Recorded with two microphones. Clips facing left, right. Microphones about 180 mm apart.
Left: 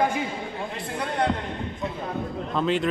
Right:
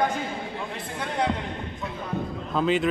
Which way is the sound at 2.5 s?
Centre (ahead or behind).